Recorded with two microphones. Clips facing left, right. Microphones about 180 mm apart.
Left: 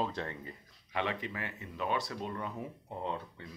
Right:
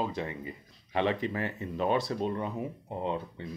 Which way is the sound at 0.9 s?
35° right (ahead or behind).